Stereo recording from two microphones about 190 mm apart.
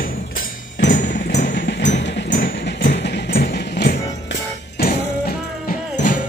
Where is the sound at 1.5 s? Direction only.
65° left (ahead or behind).